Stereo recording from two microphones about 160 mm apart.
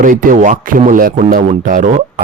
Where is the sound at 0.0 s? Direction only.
60° right (ahead or behind).